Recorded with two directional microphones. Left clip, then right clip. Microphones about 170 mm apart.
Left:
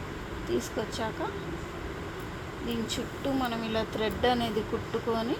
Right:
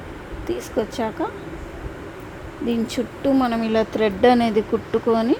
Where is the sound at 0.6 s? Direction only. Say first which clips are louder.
Right 9 dB; 75° right (ahead or behind).